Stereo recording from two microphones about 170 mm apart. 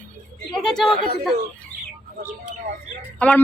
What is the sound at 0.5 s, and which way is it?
Speech, centre (ahead or behind).